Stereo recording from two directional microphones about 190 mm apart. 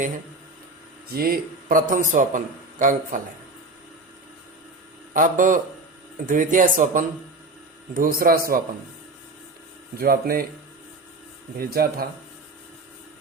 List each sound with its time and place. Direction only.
1.1 s a man's voice: 50° right (ahead or behind)
5.1 s a man's voice: 45° right (ahead or behind)
10.0 s a man's voice: 50° right (ahead or behind)
11.5 s a man's voice: 50° right (ahead or behind)